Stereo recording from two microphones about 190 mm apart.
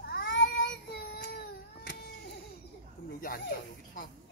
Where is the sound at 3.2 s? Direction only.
50° left (ahead or behind).